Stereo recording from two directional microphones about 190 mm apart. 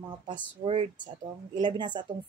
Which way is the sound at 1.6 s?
25° right (ahead or behind).